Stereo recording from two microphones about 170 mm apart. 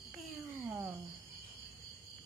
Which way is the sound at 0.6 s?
15° right (ahead or behind).